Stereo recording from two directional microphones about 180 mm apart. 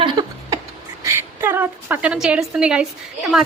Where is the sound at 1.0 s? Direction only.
15° right (ahead or behind).